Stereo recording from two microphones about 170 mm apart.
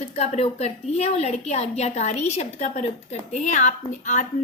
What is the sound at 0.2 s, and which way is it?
A woman's voice, 40° left (ahead or behind).